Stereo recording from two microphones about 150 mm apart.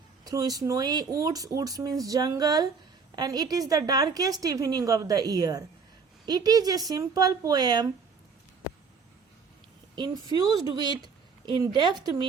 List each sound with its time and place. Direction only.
0.3 s a woman's voice: 25° right (ahead or behind)
9.9 s a woman's voice: 30° right (ahead or behind)